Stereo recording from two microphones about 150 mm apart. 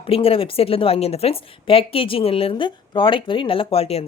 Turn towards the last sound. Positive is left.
turn(degrees=45)  # may be behind; listen again after turning